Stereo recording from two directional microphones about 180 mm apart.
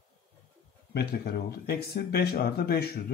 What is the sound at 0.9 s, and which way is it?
Speech, 60° left (ahead or behind).